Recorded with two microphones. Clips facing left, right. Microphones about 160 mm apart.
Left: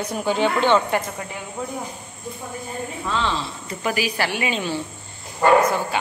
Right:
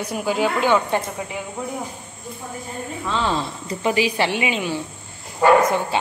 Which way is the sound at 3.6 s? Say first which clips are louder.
Right 4 dB; 25° right (ahead or behind).